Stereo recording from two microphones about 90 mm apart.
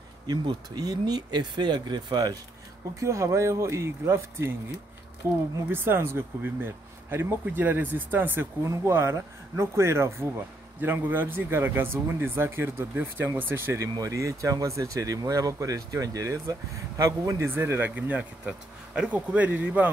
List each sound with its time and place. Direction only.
0.3 s speech: 50° right (ahead or behind)
3.0 s speech: 35° right (ahead or behind)
8.6 s speech: 30° right (ahead or behind)
13.9 s speech: 40° right (ahead or behind)
17.6 s speech: 20° right (ahead or behind)